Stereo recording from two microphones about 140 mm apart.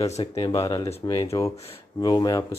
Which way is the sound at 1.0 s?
35° left (ahead or behind).